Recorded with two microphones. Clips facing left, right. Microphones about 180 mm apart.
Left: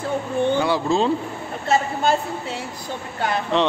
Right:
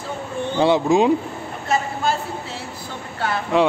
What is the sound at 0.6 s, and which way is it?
Speech, 20° right (ahead or behind).